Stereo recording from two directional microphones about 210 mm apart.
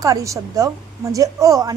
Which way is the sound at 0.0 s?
15° right (ahead or behind).